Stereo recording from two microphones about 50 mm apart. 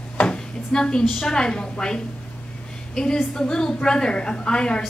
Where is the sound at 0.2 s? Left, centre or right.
Left.